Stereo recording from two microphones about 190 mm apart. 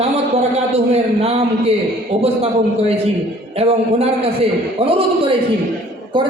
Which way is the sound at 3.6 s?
30° right (ahead or behind).